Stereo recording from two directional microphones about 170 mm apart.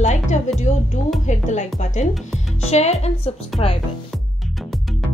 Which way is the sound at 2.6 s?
40° left (ahead or behind).